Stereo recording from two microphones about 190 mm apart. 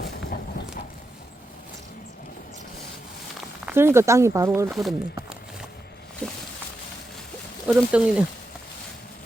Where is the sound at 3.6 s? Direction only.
15° right (ahead or behind).